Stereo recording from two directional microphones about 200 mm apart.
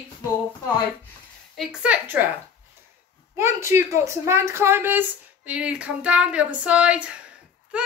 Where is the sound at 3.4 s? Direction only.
15° right (ahead or behind).